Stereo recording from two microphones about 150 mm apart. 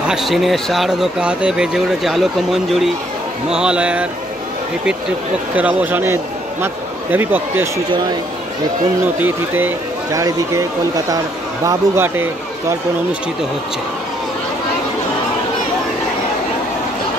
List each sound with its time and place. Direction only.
0.1 s speech: centre (ahead or behind)
5.6 s speech: 10° right (ahead or behind)
9.0 s speech: 10° right (ahead or behind)